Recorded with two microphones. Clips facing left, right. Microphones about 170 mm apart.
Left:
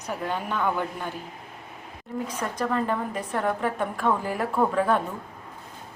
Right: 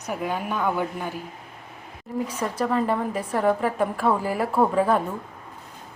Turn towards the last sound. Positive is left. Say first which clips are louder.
# right 2 dB
turn(degrees=-10)  # may be behind; listen again after turning